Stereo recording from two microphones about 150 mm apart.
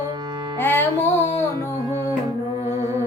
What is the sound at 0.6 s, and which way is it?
Music, 15° left (ahead or behind).